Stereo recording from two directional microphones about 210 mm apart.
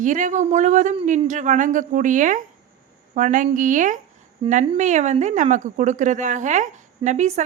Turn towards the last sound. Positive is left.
turn(degrees=-35)  # may be behind; listen again after turning